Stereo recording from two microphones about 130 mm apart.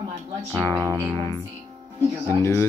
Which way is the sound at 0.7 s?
20° right (ahead or behind).